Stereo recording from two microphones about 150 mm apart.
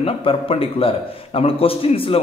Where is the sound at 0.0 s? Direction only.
40° left (ahead or behind).